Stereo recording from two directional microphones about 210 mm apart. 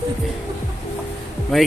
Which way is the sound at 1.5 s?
Centre (ahead or behind).